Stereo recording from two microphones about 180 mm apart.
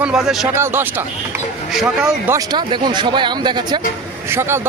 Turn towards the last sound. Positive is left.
turn(degrees=-15)  # may be behind; listen again after turning